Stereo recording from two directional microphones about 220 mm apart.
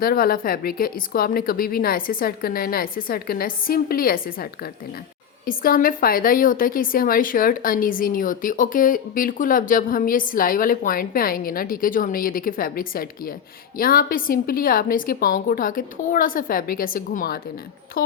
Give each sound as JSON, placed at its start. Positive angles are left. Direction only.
{"t": 0.0, "sound": "a woman's voice", "side_deg": 40}